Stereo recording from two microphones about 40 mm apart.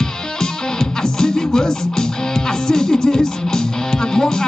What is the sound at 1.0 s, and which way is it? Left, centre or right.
Music, centre.